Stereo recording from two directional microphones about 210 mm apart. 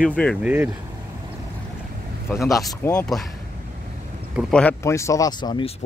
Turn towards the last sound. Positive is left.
turn(degrees=20)  # may be behind; listen again after turning